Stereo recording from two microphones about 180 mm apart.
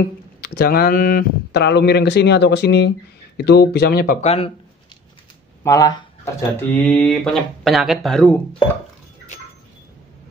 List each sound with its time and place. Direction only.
0.4 s speech: 55° left (ahead or behind)
4.2 s speech: 35° left (ahead or behind)
5.6 s speech: 20° left (ahead or behind)
6.5 s speech: 10° left (ahead or behind)